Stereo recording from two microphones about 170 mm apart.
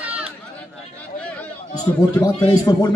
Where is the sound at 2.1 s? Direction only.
20° left (ahead or behind).